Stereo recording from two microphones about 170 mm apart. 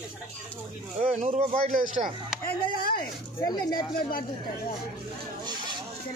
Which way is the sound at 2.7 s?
60° left (ahead or behind).